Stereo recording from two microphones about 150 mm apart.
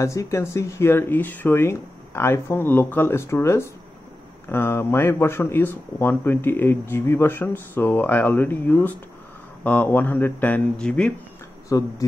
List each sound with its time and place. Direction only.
0.0 s speech: 20° left (ahead or behind)
11.7 s speech: 25° left (ahead or behind)